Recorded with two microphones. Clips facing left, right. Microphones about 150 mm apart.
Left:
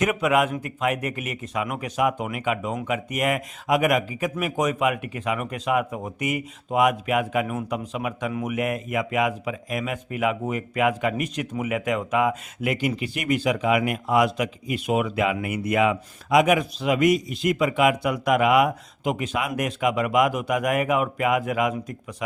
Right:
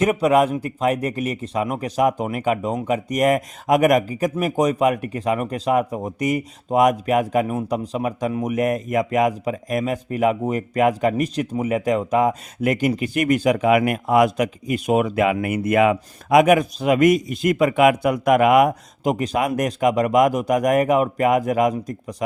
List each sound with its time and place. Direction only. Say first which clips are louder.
0.0 s speech: right 5 dB; 35° right (ahead or behind)